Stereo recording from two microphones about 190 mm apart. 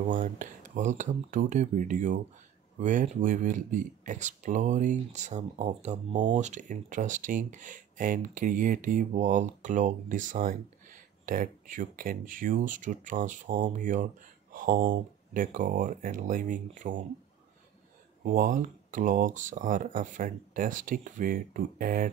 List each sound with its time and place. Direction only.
0.0 s speech: 45° right (ahead or behind)
18.2 s speech: 45° right (ahead or behind)